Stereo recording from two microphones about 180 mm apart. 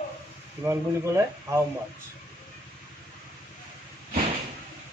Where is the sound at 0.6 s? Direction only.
15° right (ahead or behind).